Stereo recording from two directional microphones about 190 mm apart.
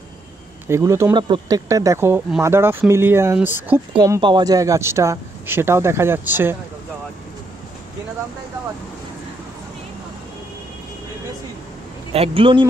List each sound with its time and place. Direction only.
0.7 s speech: 15° right (ahead or behind)
3.9 s speech: 20° right (ahead or behind)
12.1 s speech: 30° right (ahead or behind)